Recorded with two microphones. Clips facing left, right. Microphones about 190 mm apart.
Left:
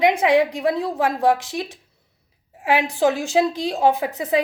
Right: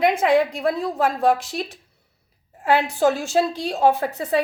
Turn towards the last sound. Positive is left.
turn(degrees=15)  # may be behind; listen again after turning